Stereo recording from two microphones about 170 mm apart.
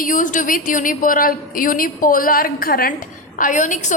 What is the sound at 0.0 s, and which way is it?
A woman's voice, 50° left (ahead or behind).